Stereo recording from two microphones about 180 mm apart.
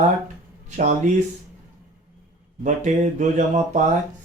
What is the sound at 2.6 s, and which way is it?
Speech, 40° right (ahead or behind).